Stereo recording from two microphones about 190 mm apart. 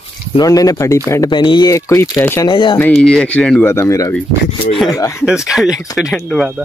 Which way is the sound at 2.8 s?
5° left (ahead or behind).